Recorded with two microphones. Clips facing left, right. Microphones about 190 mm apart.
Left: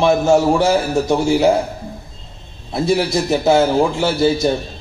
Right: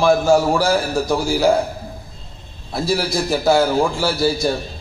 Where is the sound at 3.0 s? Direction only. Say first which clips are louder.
Left 3 dB; 20° left (ahead or behind).